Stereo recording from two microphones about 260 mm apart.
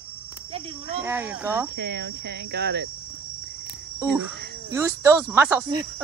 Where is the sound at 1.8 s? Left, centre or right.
Right.